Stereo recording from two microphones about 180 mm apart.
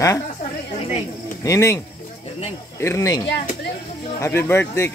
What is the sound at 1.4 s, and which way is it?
Speech, 15° left (ahead or behind).